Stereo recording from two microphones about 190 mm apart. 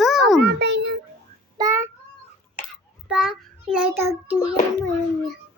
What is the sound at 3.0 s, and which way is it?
A woman's voice, 5° right (ahead or behind).